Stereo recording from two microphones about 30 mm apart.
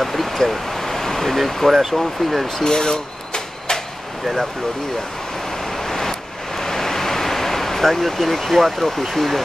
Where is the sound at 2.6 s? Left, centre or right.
Centre.